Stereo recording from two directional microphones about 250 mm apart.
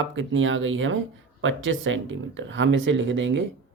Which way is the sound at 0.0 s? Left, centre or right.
Right.